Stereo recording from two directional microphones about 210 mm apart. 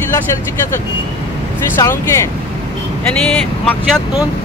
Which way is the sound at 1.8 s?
15° left (ahead or behind).